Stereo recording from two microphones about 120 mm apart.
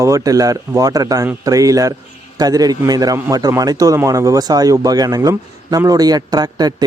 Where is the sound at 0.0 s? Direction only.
30° right (ahead or behind).